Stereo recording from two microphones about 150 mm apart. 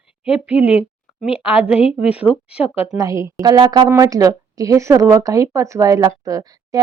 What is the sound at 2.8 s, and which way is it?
A woman's voice, 20° right (ahead or behind).